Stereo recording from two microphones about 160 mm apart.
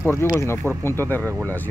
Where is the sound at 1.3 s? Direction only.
15° right (ahead or behind).